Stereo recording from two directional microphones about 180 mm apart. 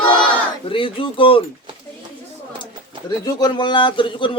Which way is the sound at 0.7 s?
30° left (ahead or behind).